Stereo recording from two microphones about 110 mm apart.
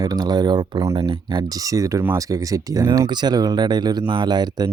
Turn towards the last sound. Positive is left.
turn(degrees=-40)  # may be behind; listen again after turning